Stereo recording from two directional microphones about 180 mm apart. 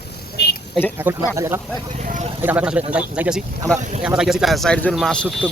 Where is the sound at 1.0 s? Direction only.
15° right (ahead or behind).